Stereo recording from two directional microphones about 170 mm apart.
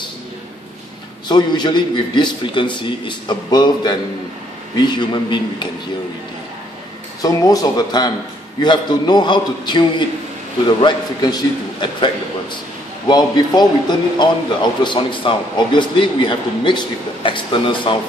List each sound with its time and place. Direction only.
1.3 s speech: 25° left (ahead or behind)
7.2 s speech: 20° left (ahead or behind)
13.1 s speech: 25° left (ahead or behind)